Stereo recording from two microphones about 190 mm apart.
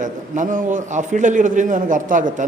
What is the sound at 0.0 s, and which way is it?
A man's voice, 45° right (ahead or behind).